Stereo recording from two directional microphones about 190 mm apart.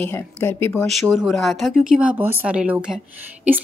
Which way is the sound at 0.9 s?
Centre (ahead or behind).